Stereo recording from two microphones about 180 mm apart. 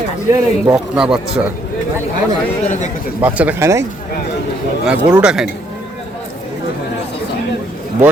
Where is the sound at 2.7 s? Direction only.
40° left (ahead or behind).